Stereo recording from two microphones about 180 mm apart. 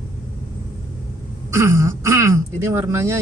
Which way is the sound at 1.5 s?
15° right (ahead or behind).